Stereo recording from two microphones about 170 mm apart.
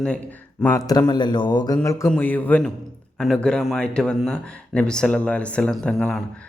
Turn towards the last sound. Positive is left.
turn(degrees=5)  # may be behind; listen again after turning